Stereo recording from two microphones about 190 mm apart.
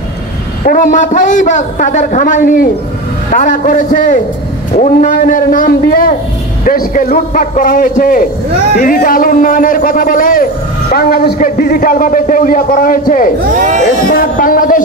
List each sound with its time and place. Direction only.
0.7 s a man's voice: 45° left (ahead or behind)
13.6 s speech: 40° right (ahead or behind)
14.1 s a man's voice: 45° left (ahead or behind)